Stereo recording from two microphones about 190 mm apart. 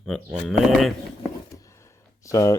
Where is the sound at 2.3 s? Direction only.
15° left (ahead or behind).